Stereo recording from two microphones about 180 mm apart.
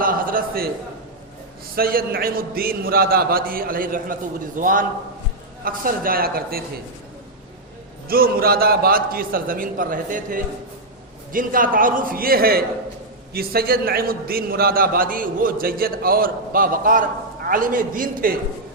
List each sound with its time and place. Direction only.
0.0 s a sound: 50° right (ahead or behind)
1.7 s a man's voice: 55° right (ahead or behind)
8.0 s a man's voice: 55° right (ahead or behind)